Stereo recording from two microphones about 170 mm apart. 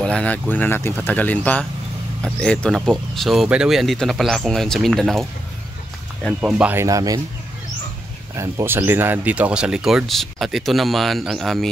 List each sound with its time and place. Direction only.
0.0 s speech: 5° left (ahead or behind)
6.4 s speech: 10° right (ahead or behind)
8.4 s speech: 15° right (ahead or behind); by 11.7 s centre (ahead or behind)